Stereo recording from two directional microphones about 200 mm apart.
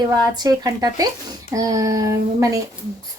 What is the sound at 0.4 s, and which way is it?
Speech, 20° right (ahead or behind).